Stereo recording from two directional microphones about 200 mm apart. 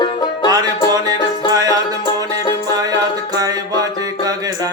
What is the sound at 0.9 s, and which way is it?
Music, 20° right (ahead or behind).